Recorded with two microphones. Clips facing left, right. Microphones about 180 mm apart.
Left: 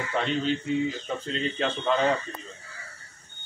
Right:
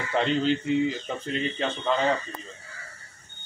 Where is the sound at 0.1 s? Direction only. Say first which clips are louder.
Right 4 dB; 25° right (ahead or behind).